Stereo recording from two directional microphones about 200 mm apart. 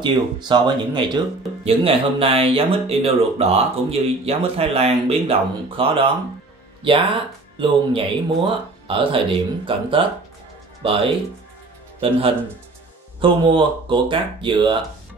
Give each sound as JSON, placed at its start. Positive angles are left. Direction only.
{"t": 0.0, "sound": "speech", "side_deg": -20}
{"t": 7.5, "sound": "speech", "side_deg": -25}